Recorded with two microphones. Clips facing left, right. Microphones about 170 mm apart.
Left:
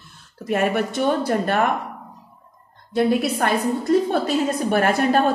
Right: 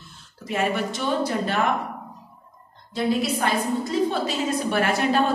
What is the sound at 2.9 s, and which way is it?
A woman's voice, 60° left (ahead or behind).